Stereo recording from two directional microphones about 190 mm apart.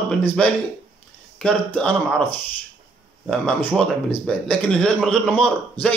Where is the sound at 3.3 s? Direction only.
5° left (ahead or behind).